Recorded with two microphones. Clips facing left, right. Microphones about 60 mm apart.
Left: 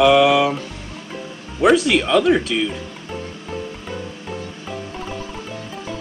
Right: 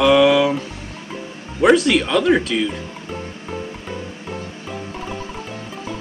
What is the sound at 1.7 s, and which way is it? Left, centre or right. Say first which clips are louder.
Speech: even; centre.